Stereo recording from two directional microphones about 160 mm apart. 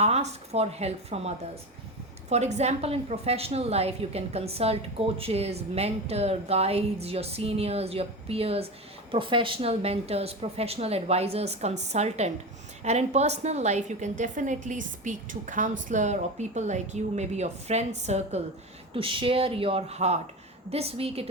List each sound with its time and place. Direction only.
0.0 s a woman's voice: 40° right (ahead or behind)
18.9 s a woman's voice: 35° right (ahead or behind)